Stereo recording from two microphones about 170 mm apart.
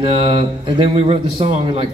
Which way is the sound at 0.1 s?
30° right (ahead or behind).